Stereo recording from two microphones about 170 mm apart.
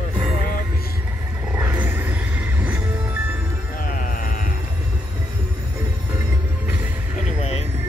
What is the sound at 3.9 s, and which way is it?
Music, 55° left (ahead or behind).